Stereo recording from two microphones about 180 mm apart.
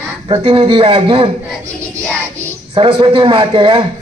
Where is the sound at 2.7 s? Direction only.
25° right (ahead or behind).